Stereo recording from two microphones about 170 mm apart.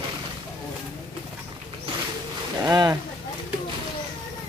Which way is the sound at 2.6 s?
20° right (ahead or behind).